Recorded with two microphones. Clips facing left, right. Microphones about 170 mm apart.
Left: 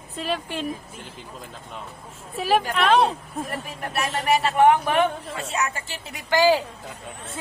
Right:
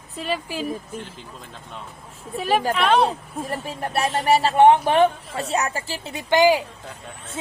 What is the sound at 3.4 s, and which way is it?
Speech, 30° right (ahead or behind).